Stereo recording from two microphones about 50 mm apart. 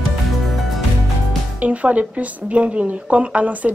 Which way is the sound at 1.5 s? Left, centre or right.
Right.